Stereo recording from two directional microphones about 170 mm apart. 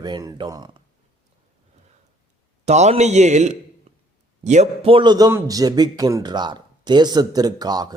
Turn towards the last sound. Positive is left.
turn(degrees=-25)  # may be behind; listen again after turning